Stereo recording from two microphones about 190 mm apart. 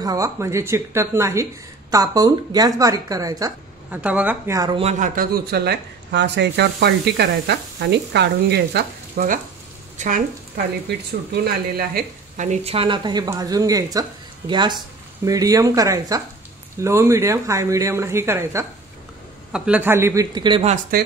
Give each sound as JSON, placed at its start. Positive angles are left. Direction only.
{"t": 0.0, "sound": "speech", "side_deg": -15}
{"t": 4.0, "sound": "speech", "side_deg": -5}
{"t": 4.6, "sound": "a woman's voice", "side_deg": -20}
{"t": 4.8, "sound": "speech", "side_deg": -40}
{"t": 11.3, "sound": "speech", "side_deg": -55}
{"t": 12.4, "sound": "a woman's voice", "side_deg": -30}
{"t": 20.9, "sound": "speech", "side_deg": -50}